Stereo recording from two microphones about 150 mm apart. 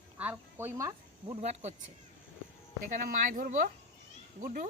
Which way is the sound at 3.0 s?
65° right (ahead or behind).